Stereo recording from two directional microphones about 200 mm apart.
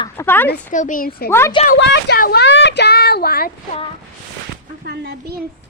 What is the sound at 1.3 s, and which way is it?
Speech, 10° left (ahead or behind).